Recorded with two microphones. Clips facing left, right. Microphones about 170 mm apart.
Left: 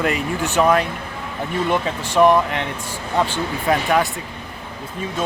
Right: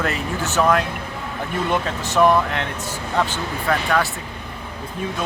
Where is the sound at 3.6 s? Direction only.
20° left (ahead or behind).